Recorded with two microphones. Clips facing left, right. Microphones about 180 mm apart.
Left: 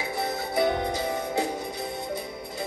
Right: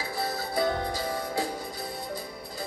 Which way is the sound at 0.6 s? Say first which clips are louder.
Left 3 dB; 20° left (ahead or behind).